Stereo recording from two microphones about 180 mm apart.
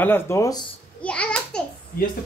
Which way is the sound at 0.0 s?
15° left (ahead or behind).